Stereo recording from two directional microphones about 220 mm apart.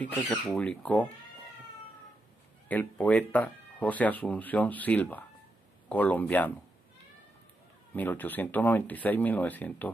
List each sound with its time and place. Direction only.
0.0 s speech: 5° left (ahead or behind)
2.7 s speech: 5° left (ahead or behind)
7.9 s speech: 10° left (ahead or behind)